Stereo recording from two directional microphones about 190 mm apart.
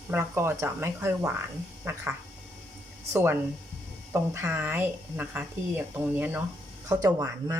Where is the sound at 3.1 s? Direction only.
10° right (ahead or behind).